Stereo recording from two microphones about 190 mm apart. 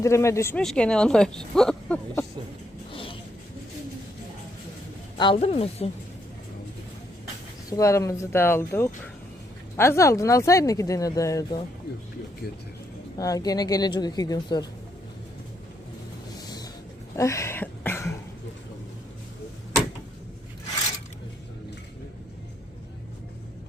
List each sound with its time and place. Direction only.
0.0 s speech: 15° left (ahead or behind)
0.6 s speech: 5° left (ahead or behind)
2.9 s a sound: 30° left (ahead or behind)
5.1 s a woman's voice: 25° left (ahead or behind)
7.7 s speech: 15° left (ahead or behind)
13.1 s a woman's voice: 20° left (ahead or behind)
17.2 s throat clearing: 15° left (ahead or behind)